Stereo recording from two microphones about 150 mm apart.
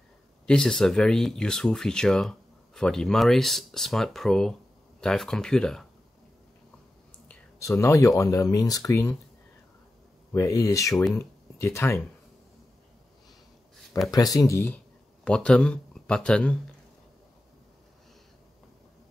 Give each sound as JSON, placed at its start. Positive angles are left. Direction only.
{"t": 0.5, "sound": "speech", "side_deg": 5}
{"t": 7.5, "sound": "speech", "side_deg": 20}
{"t": 10.3, "sound": "speech", "side_deg": 20}
{"t": 14.1, "sound": "speech", "side_deg": 25}
{"t": 15.2, "sound": "speech", "side_deg": 5}